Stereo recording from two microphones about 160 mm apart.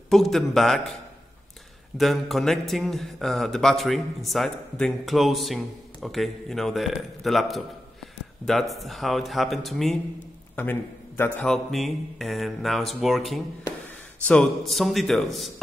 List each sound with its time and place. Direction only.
0.1 s a man's voice: centre (ahead or behind)
2.0 s a man's voice: centre (ahead or behind)
10.5 s a man's voice: 10° left (ahead or behind)